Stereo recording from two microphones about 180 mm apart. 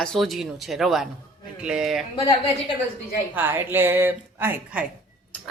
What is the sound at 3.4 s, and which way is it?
A woman's voice, 10° right (ahead or behind).